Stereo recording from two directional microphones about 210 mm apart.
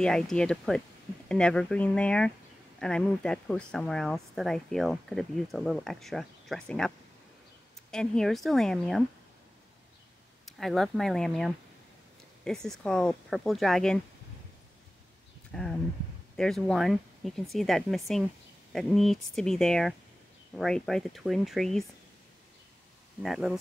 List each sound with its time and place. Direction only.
0.0 s speech: 5° left (ahead or behind)
7.9 s speech: 5° left (ahead or behind)
10.4 s speech: centre (ahead or behind)
15.5 s speech: 5° left (ahead or behind)
23.2 s speech: centre (ahead or behind)